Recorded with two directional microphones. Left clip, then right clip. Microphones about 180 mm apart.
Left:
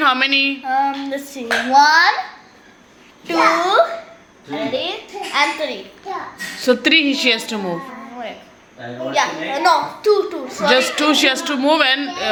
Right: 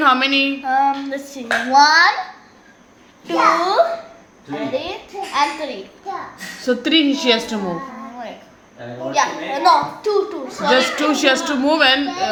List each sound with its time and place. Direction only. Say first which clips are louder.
0.0 s clapping: even; 5° left (ahead or behind)
3.2 s a woman's voice: even; 15° left (ahead or behind)
9.1 s a woman's voice: even; 20° left (ahead or behind)